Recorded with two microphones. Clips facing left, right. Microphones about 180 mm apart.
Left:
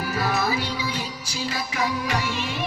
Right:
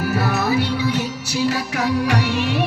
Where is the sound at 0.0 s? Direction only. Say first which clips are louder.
Right 4 dB; 60° right (ahead or behind).